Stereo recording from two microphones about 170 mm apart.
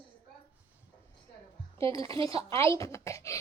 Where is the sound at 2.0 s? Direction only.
30° right (ahead or behind).